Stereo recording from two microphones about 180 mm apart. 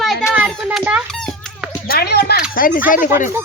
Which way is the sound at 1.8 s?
60° left (ahead or behind).